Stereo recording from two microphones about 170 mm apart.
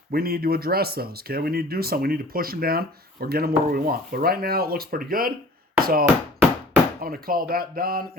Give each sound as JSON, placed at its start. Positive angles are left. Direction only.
{"t": 0.1, "sound": "speech", "side_deg": -65}
{"t": 5.8, "sound": "a sound", "side_deg": -60}
{"t": 7.0, "sound": "speech", "side_deg": -60}